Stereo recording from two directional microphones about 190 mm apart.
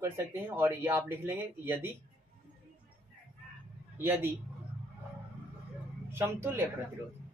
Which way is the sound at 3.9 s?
10° right (ahead or behind).